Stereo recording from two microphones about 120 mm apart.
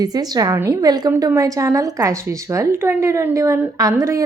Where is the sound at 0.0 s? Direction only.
35° right (ahead or behind).